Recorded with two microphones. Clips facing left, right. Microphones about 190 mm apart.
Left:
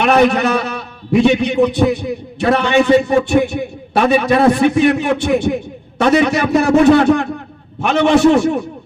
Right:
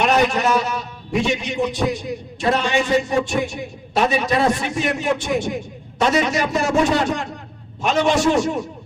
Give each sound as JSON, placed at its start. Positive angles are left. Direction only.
{"t": 0.0, "sound": "a man's voice", "side_deg": 60}